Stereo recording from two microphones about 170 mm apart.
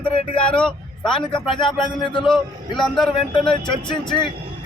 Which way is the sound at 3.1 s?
30° left (ahead or behind).